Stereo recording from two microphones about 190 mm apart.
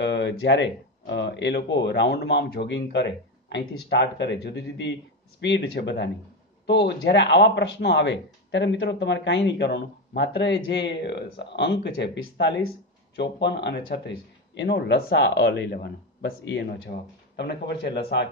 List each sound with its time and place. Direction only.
0.0 s speech: 70° left (ahead or behind)